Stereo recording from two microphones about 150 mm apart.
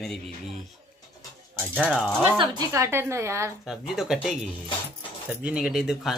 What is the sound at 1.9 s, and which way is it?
Speech, 5° left (ahead or behind).